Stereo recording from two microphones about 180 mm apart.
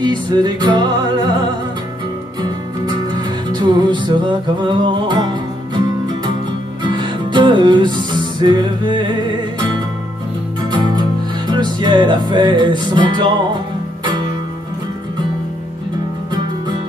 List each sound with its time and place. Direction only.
0.0 s speech: 25° right (ahead or behind)
2.4 s music: 25° right (ahead or behind)
4.6 s speech: 25° right (ahead or behind)
6.8 s music: 25° right (ahead or behind)
10.7 s music: 25° right (ahead or behind)
11.5 s speech: 25° right (ahead or behind)